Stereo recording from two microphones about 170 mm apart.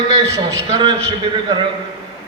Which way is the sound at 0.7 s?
30° right (ahead or behind).